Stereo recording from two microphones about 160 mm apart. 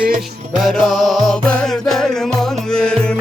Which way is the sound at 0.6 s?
Centre (ahead or behind).